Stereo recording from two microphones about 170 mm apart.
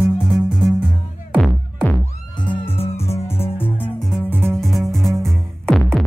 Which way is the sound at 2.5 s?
35° left (ahead or behind).